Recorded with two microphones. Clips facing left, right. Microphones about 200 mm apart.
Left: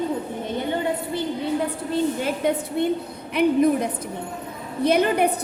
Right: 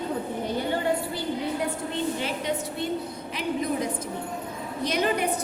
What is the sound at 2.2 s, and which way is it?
A woman's voice, 50° left (ahead or behind).